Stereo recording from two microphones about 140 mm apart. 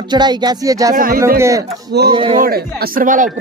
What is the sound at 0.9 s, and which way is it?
Speech, 90° right.